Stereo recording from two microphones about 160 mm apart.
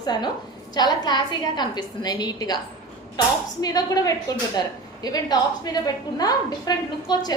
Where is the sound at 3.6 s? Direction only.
25° left (ahead or behind).